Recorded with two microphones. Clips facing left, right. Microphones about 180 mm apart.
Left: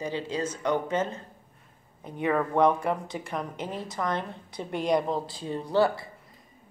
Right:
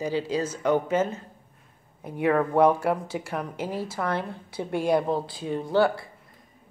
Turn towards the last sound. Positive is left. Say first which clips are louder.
# right 2 dB
turn(degrees=0)  # may be behind; listen again after turning